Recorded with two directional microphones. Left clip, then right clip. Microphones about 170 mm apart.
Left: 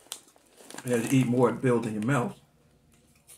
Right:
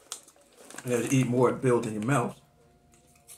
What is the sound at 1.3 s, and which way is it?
Speech, 5° left (ahead or behind).